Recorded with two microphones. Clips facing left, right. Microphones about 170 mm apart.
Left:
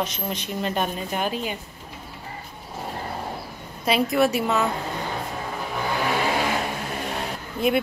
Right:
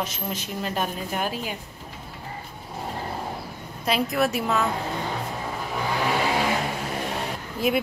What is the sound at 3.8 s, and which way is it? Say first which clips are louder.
Speech: left 3 dB; centre (ahead or behind).